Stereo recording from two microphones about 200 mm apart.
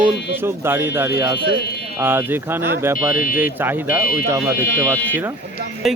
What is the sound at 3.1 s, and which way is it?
Speech, 45° left (ahead or behind).